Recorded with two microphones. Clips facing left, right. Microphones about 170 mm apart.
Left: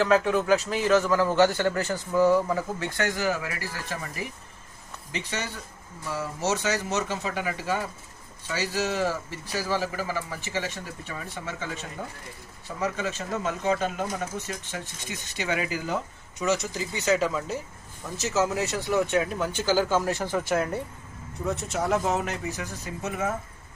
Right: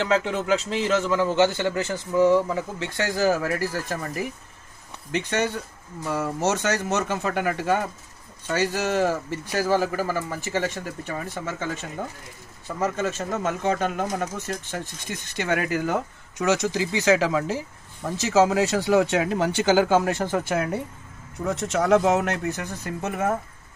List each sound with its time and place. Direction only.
0.3 s a man's voice: 25° right (ahead or behind)
2.7 s speech: 30° right (ahead or behind); by 4.3 s 45° right (ahead or behind)
5.1 s speech: 60° right (ahead or behind)
16.4 s speech: 90° right; by 20.5 s 50° right (ahead or behind)
21.5 s speech: 90° right; by 23.4 s 55° right (ahead or behind)